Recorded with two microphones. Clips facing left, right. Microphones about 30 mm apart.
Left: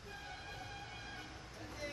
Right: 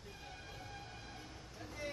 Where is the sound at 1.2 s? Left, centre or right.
Centre.